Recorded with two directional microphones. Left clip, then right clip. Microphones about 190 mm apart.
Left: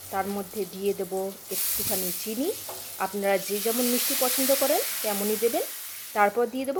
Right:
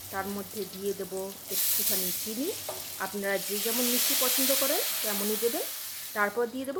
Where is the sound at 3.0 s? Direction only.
25° left (ahead or behind).